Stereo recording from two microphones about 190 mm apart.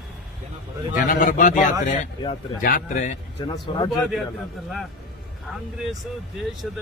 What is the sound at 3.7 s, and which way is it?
Speech, 25° left (ahead or behind).